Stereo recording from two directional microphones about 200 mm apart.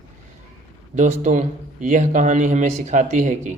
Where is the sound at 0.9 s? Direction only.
35° right (ahead or behind).